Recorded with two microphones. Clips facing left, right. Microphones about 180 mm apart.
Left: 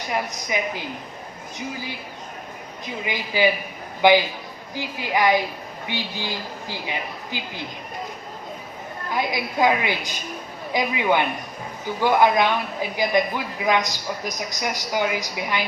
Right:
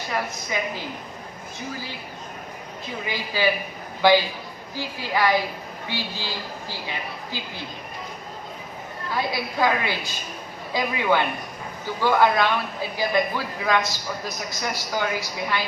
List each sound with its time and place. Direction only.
0.1 s a man's voice: 15° left (ahead or behind)
2.8 s a man's voice: 15° left (ahead or behind)
9.0 s a man's voice: 15° left (ahead or behind)